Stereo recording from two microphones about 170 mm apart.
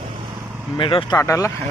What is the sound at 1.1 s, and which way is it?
Speech, 15° left (ahead or behind).